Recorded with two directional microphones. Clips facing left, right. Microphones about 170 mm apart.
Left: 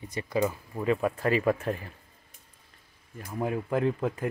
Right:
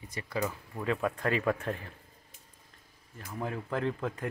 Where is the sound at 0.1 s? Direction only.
20° left (ahead or behind).